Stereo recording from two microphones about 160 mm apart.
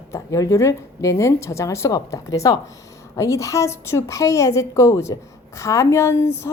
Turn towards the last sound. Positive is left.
turn(degrees=15)  # may be behind; listen again after turning